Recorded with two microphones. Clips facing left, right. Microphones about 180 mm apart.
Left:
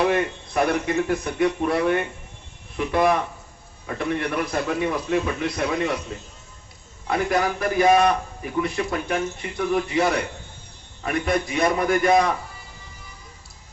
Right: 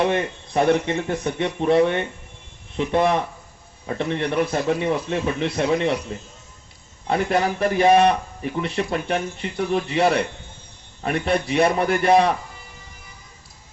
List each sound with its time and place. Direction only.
0.0 s speech: 25° right (ahead or behind)
7.1 s speech: 30° right (ahead or behind)